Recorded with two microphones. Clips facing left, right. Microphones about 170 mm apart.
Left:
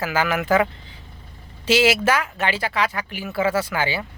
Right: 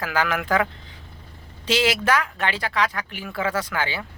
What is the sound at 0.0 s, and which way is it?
Speech, 5° left (ahead or behind).